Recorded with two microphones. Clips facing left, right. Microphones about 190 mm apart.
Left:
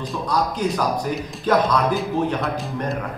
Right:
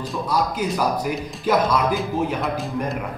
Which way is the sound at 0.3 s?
5° right (ahead or behind).